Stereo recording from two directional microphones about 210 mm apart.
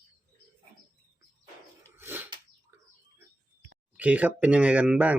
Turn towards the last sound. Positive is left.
turn(degrees=-5)  # may be behind; listen again after turning